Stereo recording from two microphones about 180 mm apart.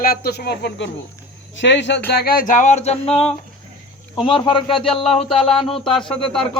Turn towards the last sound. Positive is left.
turn(degrees=5)  # may be behind; listen again after turning